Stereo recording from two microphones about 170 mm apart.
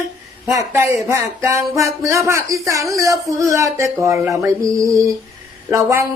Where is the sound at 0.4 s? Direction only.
15° right (ahead or behind).